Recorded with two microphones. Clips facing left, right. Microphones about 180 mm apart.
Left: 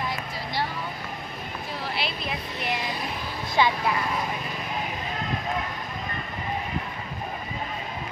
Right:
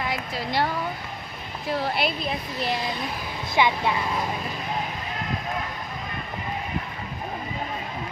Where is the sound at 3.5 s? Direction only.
15° right (ahead or behind).